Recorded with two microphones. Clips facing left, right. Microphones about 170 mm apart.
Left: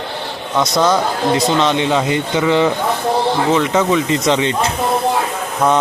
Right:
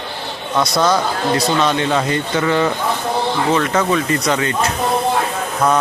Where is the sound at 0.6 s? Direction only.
20° left (ahead or behind).